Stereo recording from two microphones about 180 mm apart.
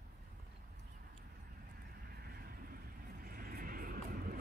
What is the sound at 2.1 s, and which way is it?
Vehicle, 55° right (ahead or behind).